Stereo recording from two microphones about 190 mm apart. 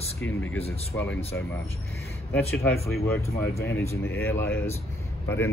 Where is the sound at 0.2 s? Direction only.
10° left (ahead or behind).